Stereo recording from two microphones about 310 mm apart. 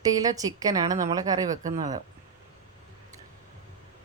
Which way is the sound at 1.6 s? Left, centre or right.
Right.